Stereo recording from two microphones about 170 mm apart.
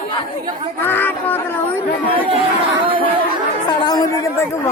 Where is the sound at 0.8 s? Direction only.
10° left (ahead or behind).